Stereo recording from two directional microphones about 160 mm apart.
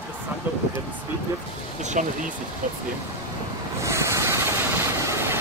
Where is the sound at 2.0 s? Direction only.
55° right (ahead or behind).